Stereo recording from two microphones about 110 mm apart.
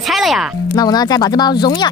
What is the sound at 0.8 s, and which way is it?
Speech, 40° left (ahead or behind).